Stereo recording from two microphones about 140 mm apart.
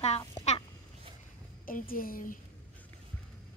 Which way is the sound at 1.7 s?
90° left.